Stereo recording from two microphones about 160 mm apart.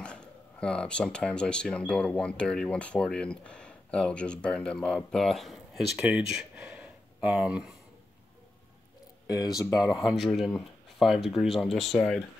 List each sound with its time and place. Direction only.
0.0 s speech: 5° left (ahead or behind)
9.3 s speech: 25° left (ahead or behind)
10.0 s speech: centre (ahead or behind)